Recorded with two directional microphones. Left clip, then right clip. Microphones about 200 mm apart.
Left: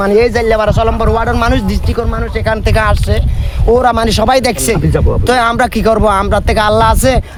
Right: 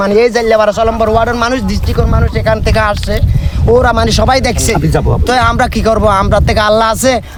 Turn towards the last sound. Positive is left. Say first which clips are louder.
# even
turn(degrees=5)  # may be behind; listen again after turning